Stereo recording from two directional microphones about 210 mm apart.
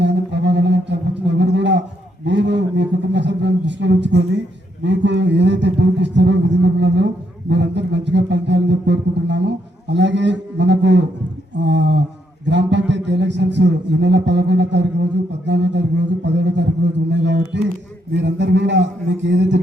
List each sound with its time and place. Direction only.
0.0 s a sound: 55° right (ahead or behind)
2.2 s a man's voice: 55° right (ahead or behind)
7.5 s music: 55° right (ahead or behind)
9.9 s a man's voice: 55° right (ahead or behind)